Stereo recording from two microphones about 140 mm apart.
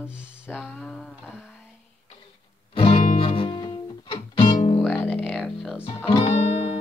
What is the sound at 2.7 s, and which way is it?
Music, 40° left (ahead or behind).